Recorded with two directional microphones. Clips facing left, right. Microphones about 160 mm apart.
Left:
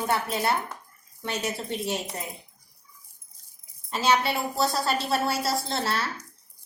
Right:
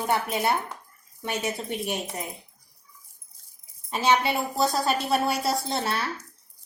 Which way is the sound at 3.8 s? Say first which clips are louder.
Right 1 dB; 20° right (ahead or behind).